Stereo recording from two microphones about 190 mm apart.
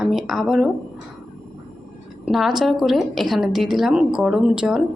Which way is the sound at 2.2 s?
Centre (ahead or behind).